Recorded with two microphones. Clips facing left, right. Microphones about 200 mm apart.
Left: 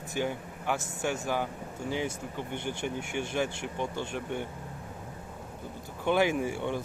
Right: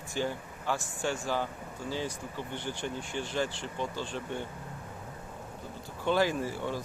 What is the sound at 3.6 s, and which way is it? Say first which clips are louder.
Speech: left 2 dB; 15° left (ahead or behind).